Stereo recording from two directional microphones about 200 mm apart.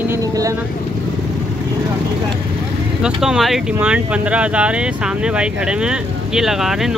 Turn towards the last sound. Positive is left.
turn(degrees=0)  # may be behind; listen again after turning